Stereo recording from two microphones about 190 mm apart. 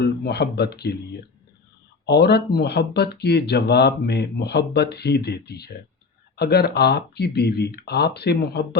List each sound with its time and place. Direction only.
0.0 s speech: 60° left (ahead or behind)
2.0 s speech: 60° left (ahead or behind)